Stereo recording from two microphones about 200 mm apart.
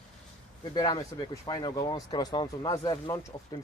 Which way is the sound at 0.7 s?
20° left (ahead or behind).